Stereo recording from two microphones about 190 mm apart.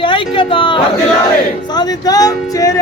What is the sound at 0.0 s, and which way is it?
Speech, 25° left (ahead or behind).